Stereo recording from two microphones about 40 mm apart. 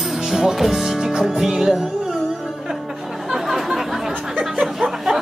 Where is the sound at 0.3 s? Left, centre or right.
Centre.